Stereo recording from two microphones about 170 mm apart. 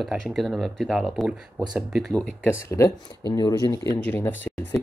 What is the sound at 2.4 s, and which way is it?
Speech, 15° left (ahead or behind).